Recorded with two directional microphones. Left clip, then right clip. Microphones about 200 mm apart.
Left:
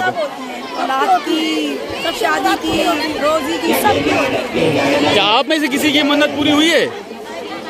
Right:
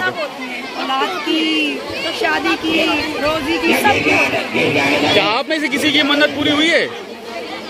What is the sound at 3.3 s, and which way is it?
Speech, 10° left (ahead or behind).